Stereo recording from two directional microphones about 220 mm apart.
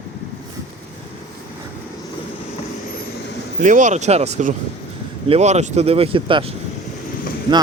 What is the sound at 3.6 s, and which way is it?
Speech, 35° right (ahead or behind).